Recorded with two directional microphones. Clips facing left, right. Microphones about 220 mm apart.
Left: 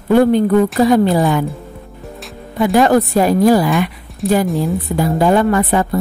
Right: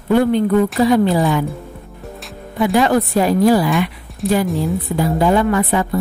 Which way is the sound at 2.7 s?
45° left (ahead or behind).